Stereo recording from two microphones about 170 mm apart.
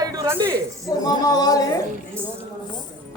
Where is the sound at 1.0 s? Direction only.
20° left (ahead or behind).